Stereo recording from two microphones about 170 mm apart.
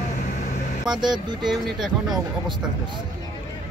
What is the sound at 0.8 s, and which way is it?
Speech, 25° right (ahead or behind).